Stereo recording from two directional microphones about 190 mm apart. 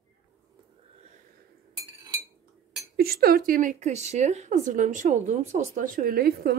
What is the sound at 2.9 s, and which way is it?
A woman's voice, 55° right (ahead or behind).